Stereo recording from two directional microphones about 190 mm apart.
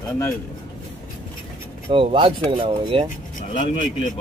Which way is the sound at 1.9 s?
30° right (ahead or behind).